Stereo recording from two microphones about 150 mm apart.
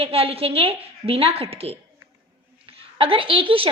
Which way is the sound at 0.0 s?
40° right (ahead or behind).